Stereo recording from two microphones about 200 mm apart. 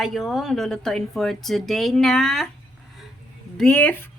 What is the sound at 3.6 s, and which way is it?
Speech, 5° left (ahead or behind).